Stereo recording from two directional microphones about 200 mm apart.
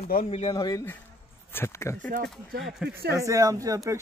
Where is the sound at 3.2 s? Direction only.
15° right (ahead or behind).